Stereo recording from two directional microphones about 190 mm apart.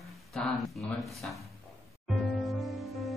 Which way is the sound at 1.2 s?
5° left (ahead or behind).